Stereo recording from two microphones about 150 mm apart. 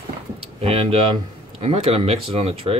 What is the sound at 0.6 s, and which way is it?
Speech, 40° right (ahead or behind).